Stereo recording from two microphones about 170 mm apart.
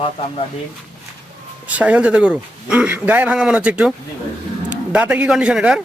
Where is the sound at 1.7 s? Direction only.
10° right (ahead or behind).